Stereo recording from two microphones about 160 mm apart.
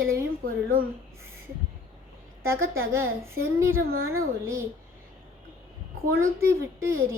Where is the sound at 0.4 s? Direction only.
65° right (ahead or behind).